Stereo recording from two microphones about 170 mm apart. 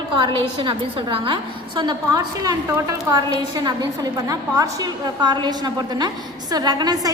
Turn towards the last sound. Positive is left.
turn(degrees=-25)  # may be behind; listen again after turning